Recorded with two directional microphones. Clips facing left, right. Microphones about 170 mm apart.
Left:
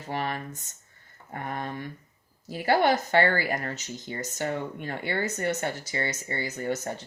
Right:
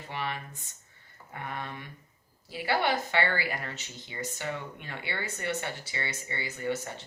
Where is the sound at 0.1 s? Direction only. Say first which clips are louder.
Left 5 dB; 45° left (ahead or behind).